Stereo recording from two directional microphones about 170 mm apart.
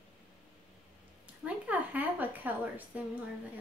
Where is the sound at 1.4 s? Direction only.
10° right (ahead or behind).